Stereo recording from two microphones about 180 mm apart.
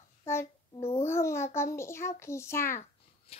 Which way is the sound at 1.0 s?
15° left (ahead or behind).